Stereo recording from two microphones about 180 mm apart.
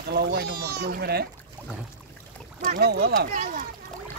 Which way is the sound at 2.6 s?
60° right (ahead or behind).